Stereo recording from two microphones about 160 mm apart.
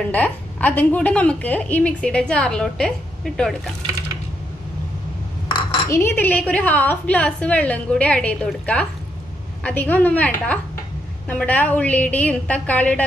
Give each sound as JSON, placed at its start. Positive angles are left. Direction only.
{"t": 0.0, "sound": "a woman's voice", "side_deg": 10}
{"t": 5.5, "sound": "dishes", "side_deg": 30}
{"t": 5.9, "sound": "a woman's voice", "side_deg": 15}